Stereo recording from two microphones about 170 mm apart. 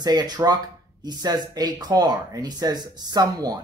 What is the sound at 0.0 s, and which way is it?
Speech, 25° right (ahead or behind).